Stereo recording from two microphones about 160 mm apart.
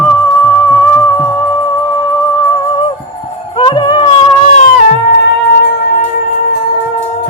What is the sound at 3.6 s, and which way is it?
Music, 30° left (ahead or behind).